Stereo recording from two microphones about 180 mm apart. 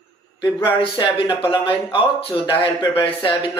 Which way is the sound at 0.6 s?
30° left (ahead or behind).